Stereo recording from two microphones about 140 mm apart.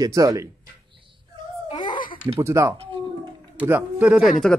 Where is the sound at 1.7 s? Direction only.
35° left (ahead or behind).